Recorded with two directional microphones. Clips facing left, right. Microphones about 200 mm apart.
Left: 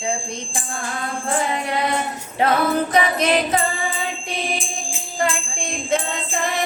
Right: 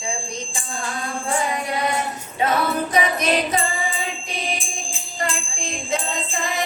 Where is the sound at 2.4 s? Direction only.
60° left (ahead or behind).